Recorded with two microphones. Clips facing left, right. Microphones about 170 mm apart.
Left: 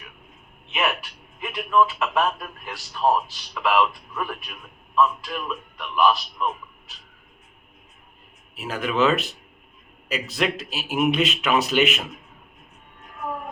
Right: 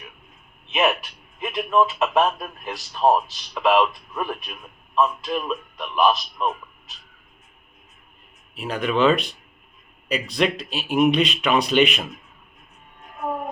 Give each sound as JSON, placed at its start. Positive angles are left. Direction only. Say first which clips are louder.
{"t": 0.7, "sound": "a man's voice", "louder": "right 5 dB", "side_deg": -20}
{"t": 8.5, "sound": "speech", "louder": "right 1 dB", "side_deg": 5}